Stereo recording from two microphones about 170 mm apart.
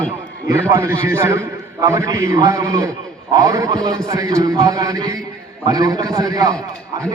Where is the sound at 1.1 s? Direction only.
15° right (ahead or behind).